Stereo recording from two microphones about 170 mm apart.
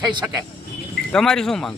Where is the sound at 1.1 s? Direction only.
5° left (ahead or behind).